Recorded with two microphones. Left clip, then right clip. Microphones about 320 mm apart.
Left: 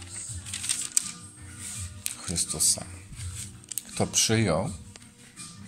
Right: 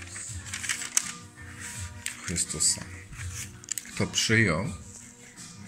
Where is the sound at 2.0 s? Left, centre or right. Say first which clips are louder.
Even; centre.